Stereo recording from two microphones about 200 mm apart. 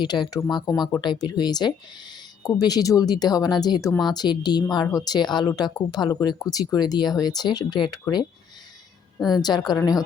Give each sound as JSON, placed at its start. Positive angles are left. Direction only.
{"t": 0.0, "sound": "speech", "side_deg": 20}
{"t": 9.3, "sound": "speech", "side_deg": 20}